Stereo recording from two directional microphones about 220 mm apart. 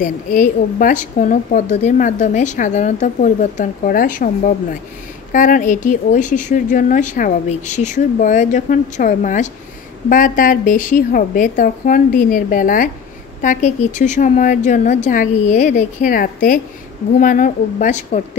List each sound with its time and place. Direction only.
0.0 s a woman's voice: 35° left (ahead or behind)